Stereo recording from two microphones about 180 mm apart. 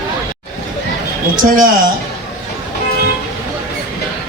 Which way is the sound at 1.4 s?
50° right (ahead or behind).